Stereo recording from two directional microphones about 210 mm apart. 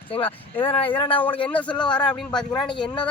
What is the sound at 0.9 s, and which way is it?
Speech, 25° left (ahead or behind).